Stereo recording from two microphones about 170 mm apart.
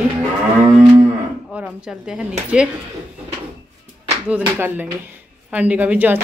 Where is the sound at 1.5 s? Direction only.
5° right (ahead or behind).